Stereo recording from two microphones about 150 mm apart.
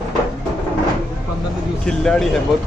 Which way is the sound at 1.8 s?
5° left (ahead or behind).